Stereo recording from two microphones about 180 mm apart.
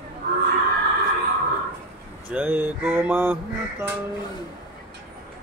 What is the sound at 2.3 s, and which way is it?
Mantra, 10° right (ahead or behind).